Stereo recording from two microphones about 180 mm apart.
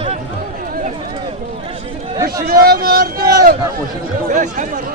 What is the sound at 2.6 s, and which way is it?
Speech, 55° right (ahead or behind).